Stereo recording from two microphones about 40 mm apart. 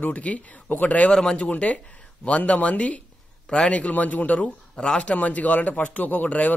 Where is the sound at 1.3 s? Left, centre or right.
Left.